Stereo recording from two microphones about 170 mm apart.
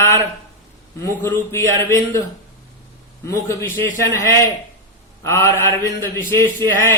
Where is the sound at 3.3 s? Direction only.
15° left (ahead or behind).